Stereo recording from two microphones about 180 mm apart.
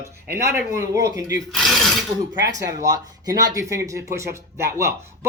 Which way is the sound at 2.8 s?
20° right (ahead or behind).